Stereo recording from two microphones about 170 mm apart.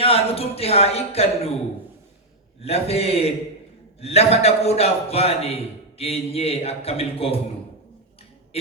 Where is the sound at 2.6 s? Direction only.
35° left (ahead or behind).